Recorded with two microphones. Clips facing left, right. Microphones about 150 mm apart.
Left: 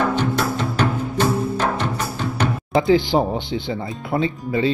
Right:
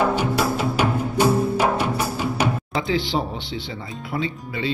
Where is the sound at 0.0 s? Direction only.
10° right (ahead or behind).